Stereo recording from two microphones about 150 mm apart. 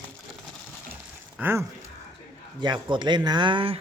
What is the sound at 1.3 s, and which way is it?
Speech, 15° right (ahead or behind).